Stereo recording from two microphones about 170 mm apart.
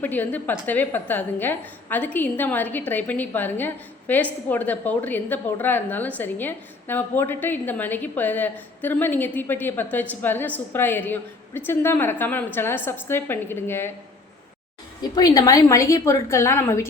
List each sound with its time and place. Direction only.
0.0 s a woman's voice: 10° left (ahead or behind)
15.1 s a woman's voice: 20° left (ahead or behind)